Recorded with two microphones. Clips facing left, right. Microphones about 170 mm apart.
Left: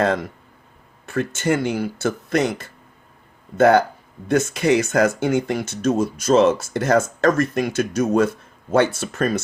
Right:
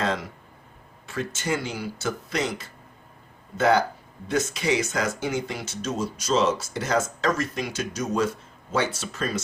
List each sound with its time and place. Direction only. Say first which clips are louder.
0.0 s speech: left 7 dB; 55° left (ahead or behind)